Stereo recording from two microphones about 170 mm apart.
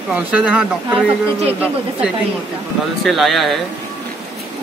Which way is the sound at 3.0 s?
Centre (ahead or behind).